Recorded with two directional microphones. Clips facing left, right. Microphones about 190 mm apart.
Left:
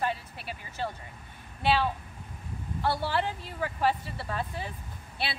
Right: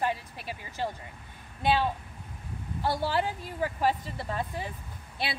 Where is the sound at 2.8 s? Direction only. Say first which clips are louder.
Right 1 dB; 15° right (ahead or behind).